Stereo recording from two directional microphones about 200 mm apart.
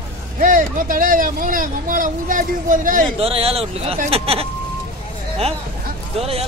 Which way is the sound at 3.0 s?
30° right (ahead or behind).